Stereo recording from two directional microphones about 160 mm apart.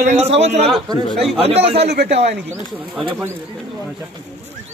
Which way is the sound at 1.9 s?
90° right.